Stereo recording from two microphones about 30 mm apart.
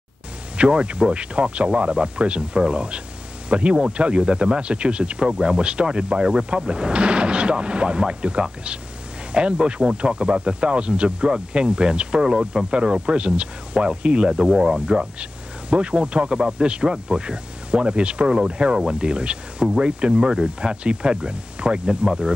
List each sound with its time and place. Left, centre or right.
0.6 s speech: right